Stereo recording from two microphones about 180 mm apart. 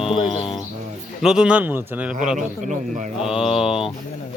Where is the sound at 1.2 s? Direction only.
5° right (ahead or behind).